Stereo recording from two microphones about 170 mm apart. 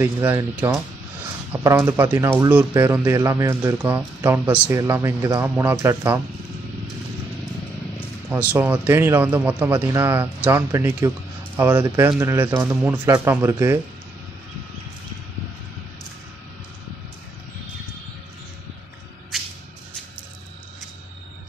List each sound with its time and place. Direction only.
0.0 s a man's voice: 10° right (ahead or behind)
8.3 s a man's voice: 10° right (ahead or behind)